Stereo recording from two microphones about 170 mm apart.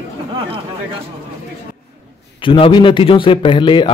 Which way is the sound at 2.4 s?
30° left (ahead or behind).